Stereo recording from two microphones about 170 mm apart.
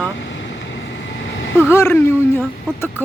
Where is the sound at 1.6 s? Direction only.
15° left (ahead or behind).